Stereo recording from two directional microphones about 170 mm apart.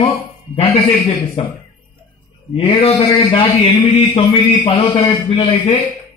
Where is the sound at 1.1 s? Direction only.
35° left (ahead or behind).